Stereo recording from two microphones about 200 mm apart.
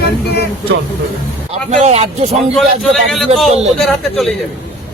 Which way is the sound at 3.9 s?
Centre (ahead or behind).